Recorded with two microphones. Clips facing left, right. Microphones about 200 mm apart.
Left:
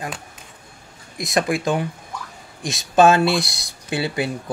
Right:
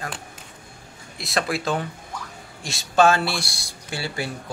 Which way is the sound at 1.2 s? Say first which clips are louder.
Left 5 dB; 15° left (ahead or behind).